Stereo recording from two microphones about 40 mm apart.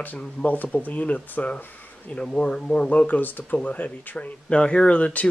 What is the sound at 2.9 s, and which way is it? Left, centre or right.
Speech, left.